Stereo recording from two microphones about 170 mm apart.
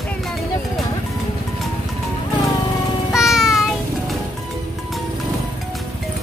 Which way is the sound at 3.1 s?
5° right (ahead or behind).